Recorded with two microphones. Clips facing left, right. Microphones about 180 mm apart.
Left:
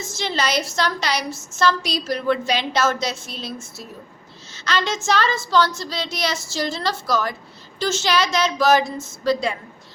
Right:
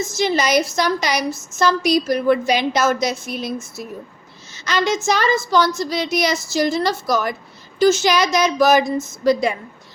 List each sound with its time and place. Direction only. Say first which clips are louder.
0.2 s a woman's voice: right 5 dB; 15° right (ahead or behind)
4.6 s a woman's voice: right 4 dB; 15° right (ahead or behind)